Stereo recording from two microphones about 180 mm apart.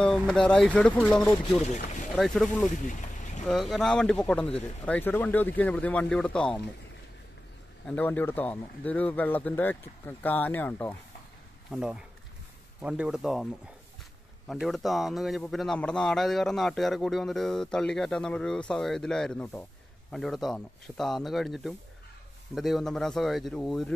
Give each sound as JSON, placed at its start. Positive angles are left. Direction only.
{"t": 0.3, "sound": "speech", "side_deg": 5}
{"t": 1.7, "sound": "speech", "side_deg": 40}
{"t": 2.1, "sound": "speech", "side_deg": 0}
{"t": 2.9, "sound": "boat", "side_deg": 45}
{"t": 3.4, "sound": "speech", "side_deg": 0}
{"t": 7.8, "sound": "speech", "side_deg": 10}
{"t": 11.7, "sound": "speech", "side_deg": -5}
{"t": 14.5, "sound": "speech", "side_deg": 0}